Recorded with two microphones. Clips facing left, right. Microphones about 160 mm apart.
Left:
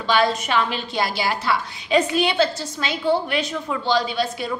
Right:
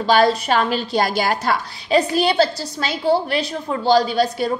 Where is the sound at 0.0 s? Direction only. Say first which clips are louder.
Right 4 dB; 40° right (ahead or behind).